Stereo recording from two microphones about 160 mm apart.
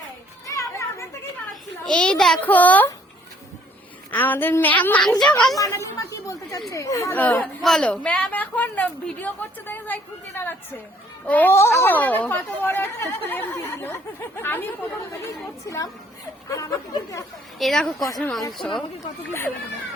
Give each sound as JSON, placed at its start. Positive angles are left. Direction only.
{"t": 0.4, "sound": "children playing", "side_deg": 20}
{"t": 1.8, "sound": "a woman's voice", "side_deg": 5}
{"t": 4.1, "sound": "a woman's voice", "side_deg": 10}
{"t": 5.5, "sound": "a woman's voice", "side_deg": 20}
{"t": 17.6, "sound": "speech", "side_deg": 5}